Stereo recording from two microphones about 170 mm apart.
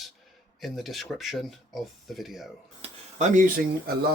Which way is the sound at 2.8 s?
45° right (ahead or behind).